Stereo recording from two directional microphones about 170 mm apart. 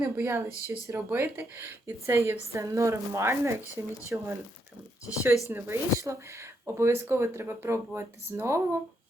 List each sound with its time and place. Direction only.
0.0 s speech: 15° right (ahead or behind)
5.5 s speech: 15° right (ahead or behind)